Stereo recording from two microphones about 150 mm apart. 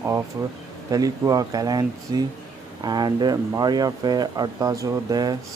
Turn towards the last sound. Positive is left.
turn(degrees=-25)  # may be behind; listen again after turning